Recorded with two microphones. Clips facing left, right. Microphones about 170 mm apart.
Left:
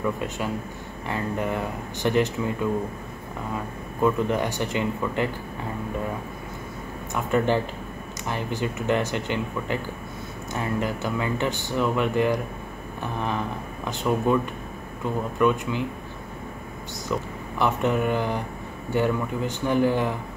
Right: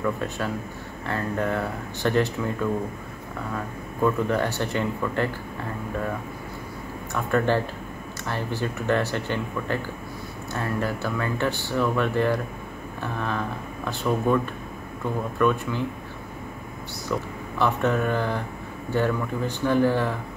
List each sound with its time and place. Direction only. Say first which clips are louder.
1.0 s speech: right 1 dB; 15° left (ahead or behind)
4.0 s speech: even; 20° left (ahead or behind)
7.2 s speech: even; 15° left (ahead or behind)
17.6 s speech: even; 15° left (ahead or behind)